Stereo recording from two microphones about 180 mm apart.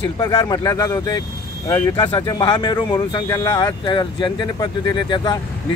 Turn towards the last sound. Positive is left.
turn(degrees=25)  # may be behind; listen again after turning